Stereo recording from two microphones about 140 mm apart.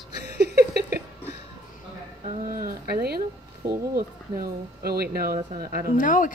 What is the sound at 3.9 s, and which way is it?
Speech, 90° right.